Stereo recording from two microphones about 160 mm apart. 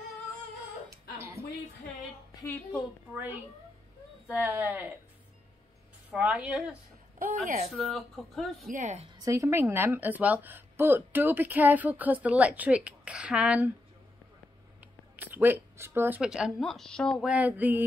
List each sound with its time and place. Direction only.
2.4 s a woman's voice: 15° left (ahead or behind)
3.1 s a woman's voice: 10° right (ahead or behind)
6.1 s a woman's voice: 5° right (ahead or behind)
7.2 s a woman's voice: 55° right (ahead or behind)
7.7 s speech: centre (ahead or behind)
8.6 s a woman's voice: 50° right (ahead or behind)
9.0 s a woman's voice: 25° right (ahead or behind); by 13.7 s 5° right (ahead or behind)
15.1 s speech: 10° right (ahead or behind)
17.3 s a woman's voice: 10° right (ahead or behind)